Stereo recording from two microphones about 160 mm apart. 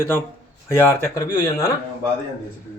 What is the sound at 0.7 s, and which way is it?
Speech, 15° left (ahead or behind).